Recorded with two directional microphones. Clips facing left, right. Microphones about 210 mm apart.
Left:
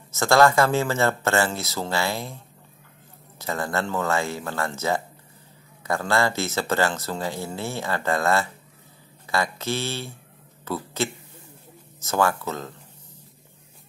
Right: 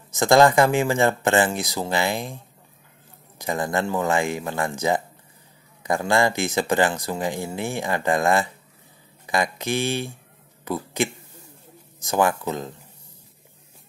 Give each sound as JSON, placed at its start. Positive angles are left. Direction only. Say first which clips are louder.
{"t": 0.1, "sound": "speech", "louder": "right 2 dB", "side_deg": -15}